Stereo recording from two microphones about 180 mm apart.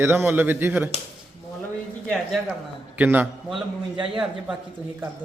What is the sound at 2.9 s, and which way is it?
Speech, 10° right (ahead or behind).